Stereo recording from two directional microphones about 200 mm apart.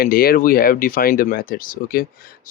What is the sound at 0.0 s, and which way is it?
Speech, 50° left (ahead or behind).